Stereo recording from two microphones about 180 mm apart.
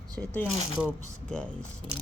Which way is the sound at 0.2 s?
5° left (ahead or behind).